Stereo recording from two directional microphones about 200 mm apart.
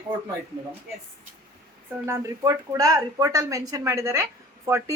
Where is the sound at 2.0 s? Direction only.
15° right (ahead or behind).